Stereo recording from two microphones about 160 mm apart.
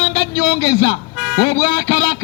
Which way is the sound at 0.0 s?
30° left (ahead or behind).